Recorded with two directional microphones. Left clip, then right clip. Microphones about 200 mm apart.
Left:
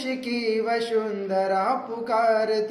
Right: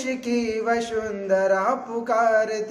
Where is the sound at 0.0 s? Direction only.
15° right (ahead or behind).